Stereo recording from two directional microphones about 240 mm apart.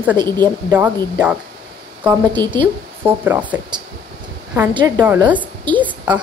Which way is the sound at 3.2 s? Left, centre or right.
Centre.